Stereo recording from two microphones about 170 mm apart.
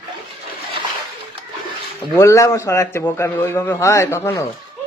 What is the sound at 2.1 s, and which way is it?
A man's voice, 15° left (ahead or behind).